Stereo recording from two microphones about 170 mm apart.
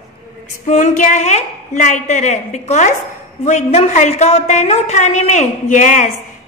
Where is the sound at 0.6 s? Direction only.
45° left (ahead or behind).